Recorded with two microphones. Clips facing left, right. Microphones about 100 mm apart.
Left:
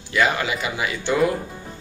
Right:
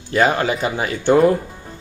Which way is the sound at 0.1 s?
40° right (ahead or behind).